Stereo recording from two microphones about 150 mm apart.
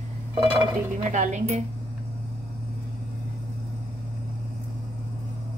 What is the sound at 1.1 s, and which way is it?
Speech, 55° right (ahead or behind).